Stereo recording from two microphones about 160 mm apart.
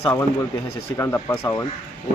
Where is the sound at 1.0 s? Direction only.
20° left (ahead or behind).